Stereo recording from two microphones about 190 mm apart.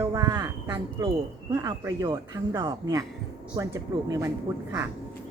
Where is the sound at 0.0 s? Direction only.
15° right (ahead or behind).